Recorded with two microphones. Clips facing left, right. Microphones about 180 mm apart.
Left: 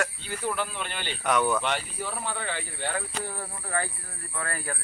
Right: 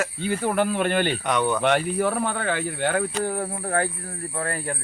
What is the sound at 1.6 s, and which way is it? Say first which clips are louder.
Speech: right 9 dB; 55° right (ahead or behind).